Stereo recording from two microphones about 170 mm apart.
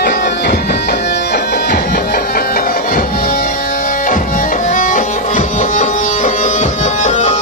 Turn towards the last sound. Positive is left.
turn(degrees=45)  # may be behind; listen again after turning